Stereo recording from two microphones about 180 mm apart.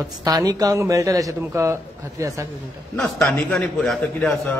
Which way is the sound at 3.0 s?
5° left (ahead or behind).